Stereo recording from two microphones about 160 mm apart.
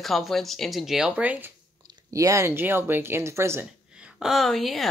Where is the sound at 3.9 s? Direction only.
5° right (ahead or behind).